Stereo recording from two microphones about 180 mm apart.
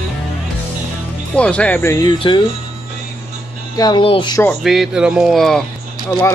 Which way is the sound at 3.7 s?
25° left (ahead or behind).